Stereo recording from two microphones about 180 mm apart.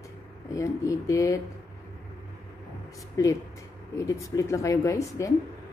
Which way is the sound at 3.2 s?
20° left (ahead or behind).